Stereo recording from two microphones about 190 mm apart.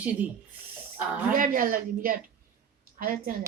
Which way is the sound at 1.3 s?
45° right (ahead or behind).